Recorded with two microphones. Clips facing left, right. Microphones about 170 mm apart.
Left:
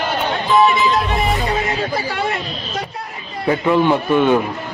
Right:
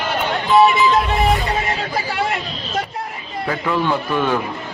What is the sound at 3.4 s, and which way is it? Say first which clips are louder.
Speech: left 6 dB; 25° left (ahead or behind).